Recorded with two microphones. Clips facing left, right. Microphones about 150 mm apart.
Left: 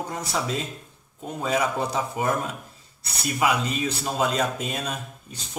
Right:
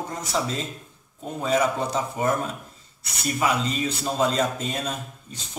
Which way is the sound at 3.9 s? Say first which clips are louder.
Right 2 dB; 10° left (ahead or behind).